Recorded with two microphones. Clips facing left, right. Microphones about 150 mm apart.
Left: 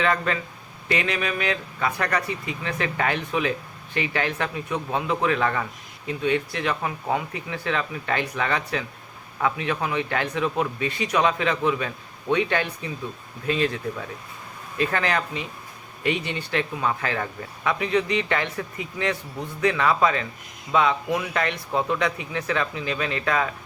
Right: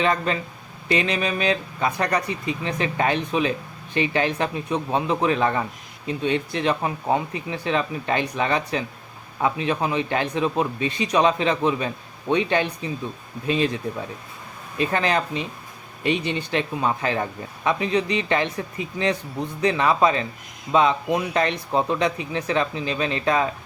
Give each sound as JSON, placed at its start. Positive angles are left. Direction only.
{"t": 0.0, "sound": "speech", "side_deg": -20}
{"t": 14.8, "sound": "speech", "side_deg": -25}